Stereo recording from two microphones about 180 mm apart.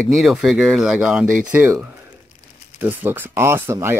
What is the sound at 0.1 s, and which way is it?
Speech, centre (ahead or behind).